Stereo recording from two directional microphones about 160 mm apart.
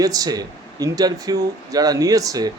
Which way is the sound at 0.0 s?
25° right (ahead or behind).